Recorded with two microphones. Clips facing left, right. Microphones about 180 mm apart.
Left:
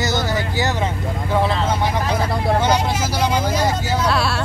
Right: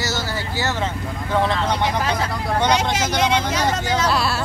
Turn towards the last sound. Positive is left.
turn(degrees=0)  # may be behind; listen again after turning